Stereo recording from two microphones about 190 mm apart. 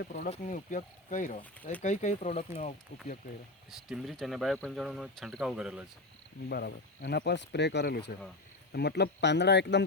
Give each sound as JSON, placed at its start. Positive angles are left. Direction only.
{"t": 0.0, "sound": "speech", "side_deg": 45}
{"t": 3.7, "sound": "speech", "side_deg": 0}
{"t": 6.5, "sound": "speech", "side_deg": 60}